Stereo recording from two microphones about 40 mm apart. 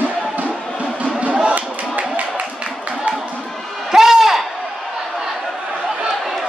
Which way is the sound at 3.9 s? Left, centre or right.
Centre.